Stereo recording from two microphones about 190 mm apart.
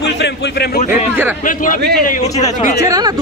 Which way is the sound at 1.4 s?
45° left (ahead or behind).